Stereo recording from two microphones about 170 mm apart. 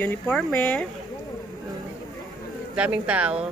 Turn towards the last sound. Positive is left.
turn(degrees=-10)  # may be behind; listen again after turning